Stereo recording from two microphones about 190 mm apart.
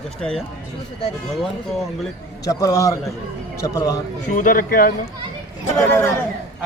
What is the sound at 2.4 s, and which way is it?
A man's voice, 20° left (ahead or behind).